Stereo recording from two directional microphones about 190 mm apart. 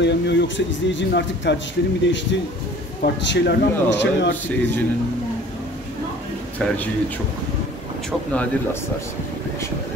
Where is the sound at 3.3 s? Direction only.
70° left (ahead or behind).